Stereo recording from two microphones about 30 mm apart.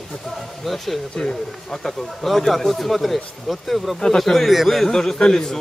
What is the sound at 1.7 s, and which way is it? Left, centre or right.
Speech, centre.